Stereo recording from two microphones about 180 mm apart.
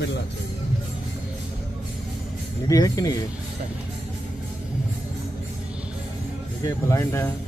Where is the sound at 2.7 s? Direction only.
20° left (ahead or behind).